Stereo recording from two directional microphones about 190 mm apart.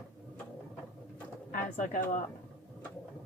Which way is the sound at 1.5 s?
45° left (ahead or behind).